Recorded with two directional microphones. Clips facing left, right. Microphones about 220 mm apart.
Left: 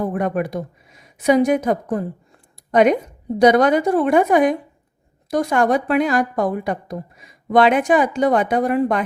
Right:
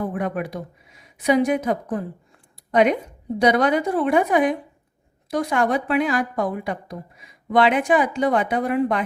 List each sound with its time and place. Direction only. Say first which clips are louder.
0.0 s a woman's voice: left 4 dB; 45° left (ahead or behind)
3.3 s a woman's voice: left 5 dB; 45° left (ahead or behind)